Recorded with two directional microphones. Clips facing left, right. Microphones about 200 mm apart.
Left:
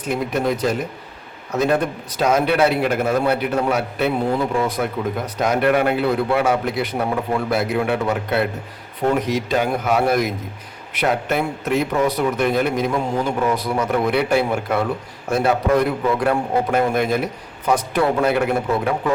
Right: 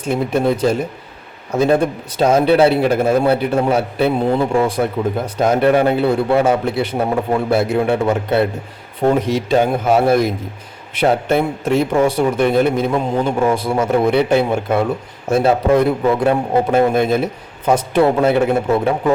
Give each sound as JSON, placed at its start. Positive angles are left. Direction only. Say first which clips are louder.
{"t": 0.0, "sound": "a man's voice", "louder": "right 4 dB", "side_deg": -30}